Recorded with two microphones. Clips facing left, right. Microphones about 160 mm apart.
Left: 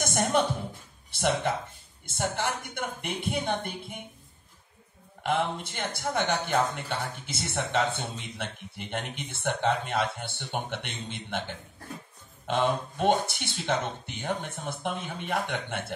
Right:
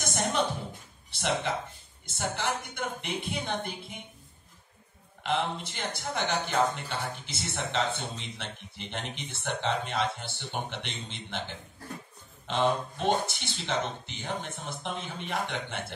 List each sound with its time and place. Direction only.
0.0 s music: 55° left (ahead or behind)
2.1 s speech: 50° left (ahead or behind)
5.2 s speech: 50° left (ahead or behind)
12.4 s speech: 55° left (ahead or behind)